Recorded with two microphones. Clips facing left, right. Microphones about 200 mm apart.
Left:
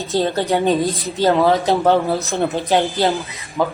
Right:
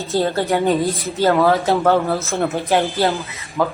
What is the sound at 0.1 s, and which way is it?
A woman's voice, 15° left (ahead or behind).